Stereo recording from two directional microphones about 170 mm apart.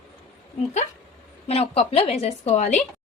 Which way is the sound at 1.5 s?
35° left (ahead or behind).